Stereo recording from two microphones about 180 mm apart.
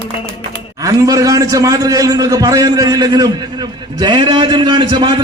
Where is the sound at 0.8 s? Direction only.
20° right (ahead or behind).